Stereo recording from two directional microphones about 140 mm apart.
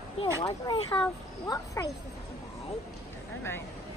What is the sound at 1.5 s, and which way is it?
Speech, 25° left (ahead or behind).